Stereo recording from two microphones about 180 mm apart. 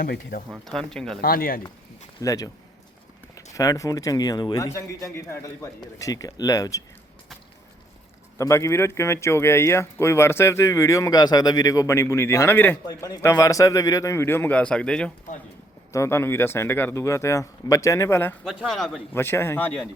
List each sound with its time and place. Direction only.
0.0 s speech: 55° left (ahead or behind)
0.5 s speech: centre (ahead or behind)
1.2 s speech: 55° left (ahead or behind)
2.2 s a man's voice: 20° left (ahead or behind)
3.5 s a man's voice: 20° left (ahead or behind)
8.4 s speech: 15° left (ahead or behind)
15.9 s speech: 15° left (ahead or behind)
18.4 s speech: centre (ahead or behind)
19.1 s speech: 10° left (ahead or behind)